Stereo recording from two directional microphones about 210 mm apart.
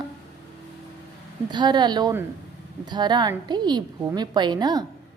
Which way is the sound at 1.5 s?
20° right (ahead or behind).